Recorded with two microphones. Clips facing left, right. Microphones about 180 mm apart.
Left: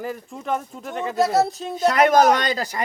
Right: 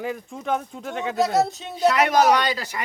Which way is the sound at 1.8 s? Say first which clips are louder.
Left 2 dB; 50° left (ahead or behind).